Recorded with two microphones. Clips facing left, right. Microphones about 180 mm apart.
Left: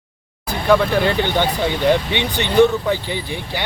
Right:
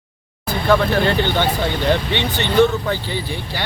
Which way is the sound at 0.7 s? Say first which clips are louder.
Left 1 dB; 10° left (ahead or behind).